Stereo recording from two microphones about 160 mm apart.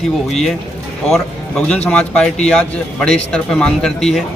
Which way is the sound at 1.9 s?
5° left (ahead or behind).